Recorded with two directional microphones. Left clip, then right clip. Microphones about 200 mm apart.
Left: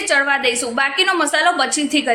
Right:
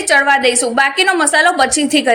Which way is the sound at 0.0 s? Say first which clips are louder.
Right 5 dB; 20° right (ahead or behind).